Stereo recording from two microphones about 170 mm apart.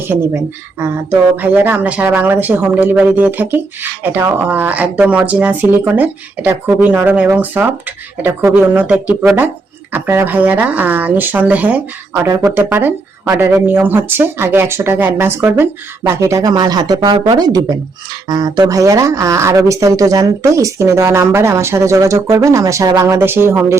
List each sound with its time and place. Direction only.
0.1 s speech: 15° right (ahead or behind)